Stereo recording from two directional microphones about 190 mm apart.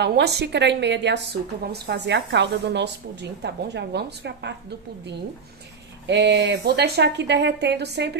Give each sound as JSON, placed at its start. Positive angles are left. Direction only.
{"t": 0.0, "sound": "a woman's voice", "side_deg": -60}
{"t": 6.0, "sound": "a woman's voice", "side_deg": -65}